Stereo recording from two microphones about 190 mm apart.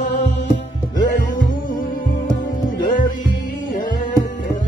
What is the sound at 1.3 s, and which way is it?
Music, 45° left (ahead or behind).